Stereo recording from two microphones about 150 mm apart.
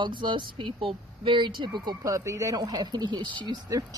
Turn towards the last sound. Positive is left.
turn(degrees=-25)  # may be behind; listen again after turning